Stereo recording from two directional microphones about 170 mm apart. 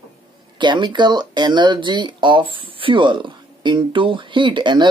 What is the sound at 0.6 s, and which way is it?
A woman's voice, 25° right (ahead or behind).